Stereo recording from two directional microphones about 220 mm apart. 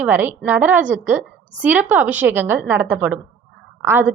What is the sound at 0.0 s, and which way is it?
A woman's voice, 10° right (ahead or behind).